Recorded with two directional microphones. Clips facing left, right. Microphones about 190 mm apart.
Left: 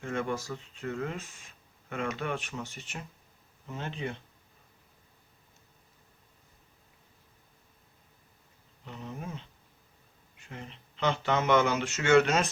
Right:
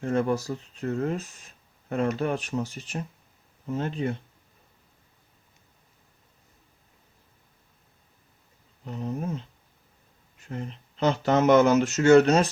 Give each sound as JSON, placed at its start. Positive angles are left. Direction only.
{"t": 0.0, "sound": "speech", "side_deg": -40}
{"t": 8.8, "sound": "speech", "side_deg": -40}
{"t": 10.5, "sound": "speech", "side_deg": -40}